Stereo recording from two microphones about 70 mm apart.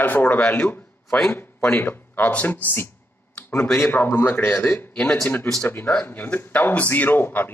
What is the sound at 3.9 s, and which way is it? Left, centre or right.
A man's voice, left.